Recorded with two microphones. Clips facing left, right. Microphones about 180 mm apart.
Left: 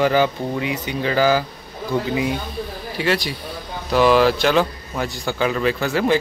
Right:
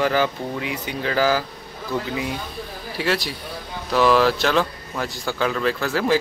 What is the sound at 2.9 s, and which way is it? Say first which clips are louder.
A man's voice: left 2 dB; 5° right (ahead or behind).